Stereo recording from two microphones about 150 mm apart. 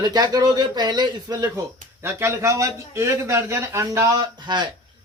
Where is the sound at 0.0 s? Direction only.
25° right (ahead or behind).